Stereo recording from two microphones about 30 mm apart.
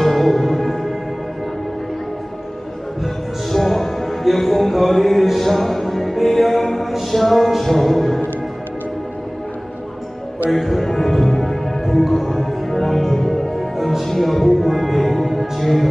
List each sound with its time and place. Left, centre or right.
0.0 s music: centre
3.5 s music: centre
10.5 s music: centre
13.7 s music: centre
14.0 s music: centre